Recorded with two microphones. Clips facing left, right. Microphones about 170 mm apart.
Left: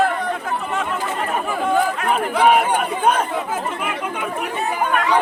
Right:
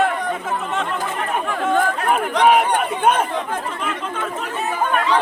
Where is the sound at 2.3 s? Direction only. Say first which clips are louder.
Even; 5° left (ahead or behind).